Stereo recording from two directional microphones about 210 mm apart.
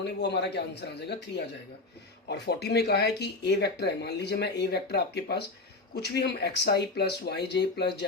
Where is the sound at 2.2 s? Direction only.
50° left (ahead or behind).